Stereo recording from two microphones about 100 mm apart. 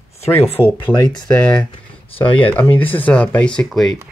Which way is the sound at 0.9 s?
20° left (ahead or behind).